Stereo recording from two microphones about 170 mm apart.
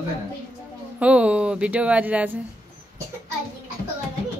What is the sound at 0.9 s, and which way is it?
A woman's voice, 5° right (ahead or behind).